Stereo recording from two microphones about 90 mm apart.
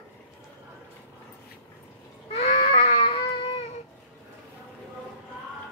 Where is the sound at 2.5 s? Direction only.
90° left.